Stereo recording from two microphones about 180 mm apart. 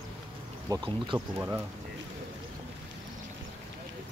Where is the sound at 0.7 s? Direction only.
20° right (ahead or behind).